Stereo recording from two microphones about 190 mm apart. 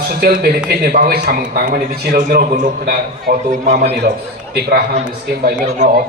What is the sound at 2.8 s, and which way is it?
Speech, 55° right (ahead or behind).